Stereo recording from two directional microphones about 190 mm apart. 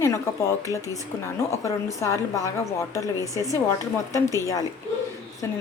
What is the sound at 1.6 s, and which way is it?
A woman's voice, 15° left (ahead or behind).